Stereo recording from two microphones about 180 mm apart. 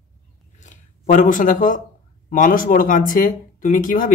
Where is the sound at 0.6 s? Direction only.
45° left (ahead or behind).